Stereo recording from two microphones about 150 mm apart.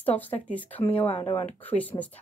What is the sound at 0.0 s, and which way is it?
A woman's voice, 10° left (ahead or behind).